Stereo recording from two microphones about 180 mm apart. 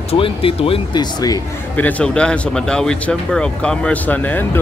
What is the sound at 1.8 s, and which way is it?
Speech, 10° left (ahead or behind).